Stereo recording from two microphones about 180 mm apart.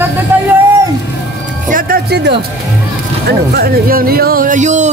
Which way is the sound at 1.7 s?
50° right (ahead or behind).